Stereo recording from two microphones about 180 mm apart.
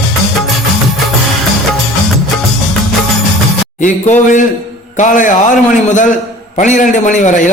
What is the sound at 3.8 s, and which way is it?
A man's voice, 45° left (ahead or behind).